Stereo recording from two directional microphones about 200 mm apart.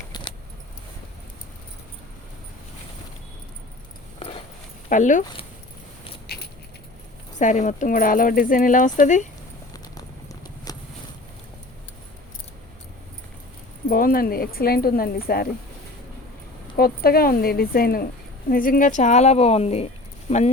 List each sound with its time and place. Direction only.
0.1 s keys jangling: 25° left (ahead or behind)
4.9 s speech: 40° left (ahead or behind)
6.2 s keys jangling: 50° left (ahead or behind)
7.3 s speech: 40° left (ahead or behind)
9.7 s a sound: 20° left (ahead or behind)
13.8 s speech: 45° left (ahead or behind)
16.7 s speech: 50° left (ahead or behind); by 20.4 s 30° left (ahead or behind)